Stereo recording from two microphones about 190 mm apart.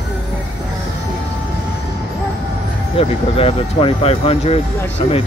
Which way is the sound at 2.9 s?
30° left (ahead or behind).